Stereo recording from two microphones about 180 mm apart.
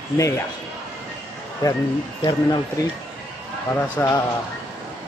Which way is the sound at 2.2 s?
20° left (ahead or behind).